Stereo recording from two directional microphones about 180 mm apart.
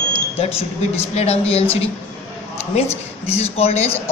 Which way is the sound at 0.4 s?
30° left (ahead or behind).